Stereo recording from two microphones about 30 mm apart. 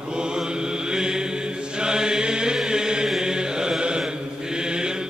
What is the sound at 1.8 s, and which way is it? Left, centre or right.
Chant, right.